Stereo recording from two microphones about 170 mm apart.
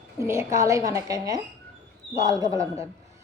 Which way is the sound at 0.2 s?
15° right (ahead or behind).